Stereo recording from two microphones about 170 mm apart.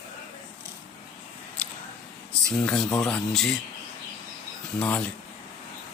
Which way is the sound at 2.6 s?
5° left (ahead or behind).